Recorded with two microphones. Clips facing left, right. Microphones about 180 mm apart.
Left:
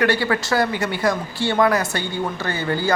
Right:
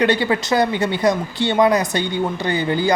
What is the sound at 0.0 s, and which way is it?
Speech, 20° right (ahead or behind).